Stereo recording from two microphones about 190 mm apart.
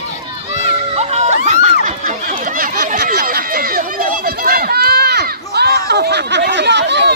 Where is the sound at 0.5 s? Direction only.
35° right (ahead or behind).